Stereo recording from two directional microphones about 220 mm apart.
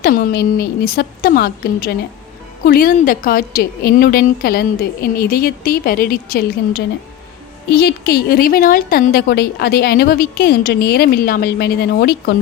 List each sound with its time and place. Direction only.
0.0 s a woman's voice: 40° left (ahead or behind)